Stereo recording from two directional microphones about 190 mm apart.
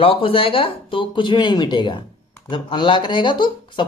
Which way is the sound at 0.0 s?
30° left (ahead or behind).